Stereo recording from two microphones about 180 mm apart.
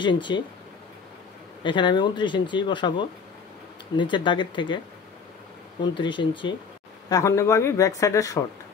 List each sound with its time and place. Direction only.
0.0 s speech: 25° left (ahead or behind)
1.6 s speech: 25° left (ahead or behind)
5.8 s speech: 25° left (ahead or behind)